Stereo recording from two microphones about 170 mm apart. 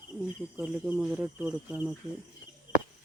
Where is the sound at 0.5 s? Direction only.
10° right (ahead or behind).